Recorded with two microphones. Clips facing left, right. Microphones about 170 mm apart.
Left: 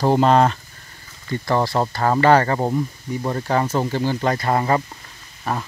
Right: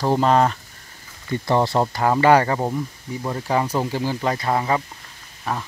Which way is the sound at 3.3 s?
5° right (ahead or behind).